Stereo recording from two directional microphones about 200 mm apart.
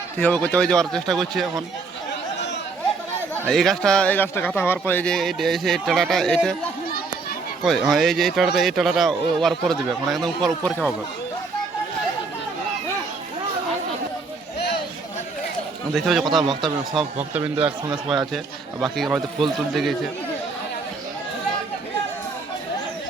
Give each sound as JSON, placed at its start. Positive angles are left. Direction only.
{"t": 0.2, "sound": "a man's voice", "side_deg": 10}
{"t": 3.4, "sound": "a man's voice", "side_deg": 0}
{"t": 7.6, "sound": "a man's voice", "side_deg": 0}
{"t": 16.0, "sound": "a man's voice", "side_deg": 0}
{"t": 16.2, "sound": "a man's voice", "side_deg": -25}
{"t": 17.6, "sound": "a man's voice", "side_deg": -25}
{"t": 19.1, "sound": "a man's voice", "side_deg": 0}